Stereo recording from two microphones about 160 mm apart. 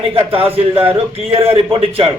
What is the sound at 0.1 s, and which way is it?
A man's voice, 35° right (ahead or behind).